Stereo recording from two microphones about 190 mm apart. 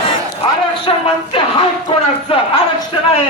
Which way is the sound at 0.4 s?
30° left (ahead or behind).